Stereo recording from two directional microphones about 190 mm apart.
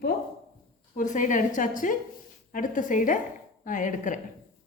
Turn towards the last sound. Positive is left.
turn(degrees=45)  # may be behind; listen again after turning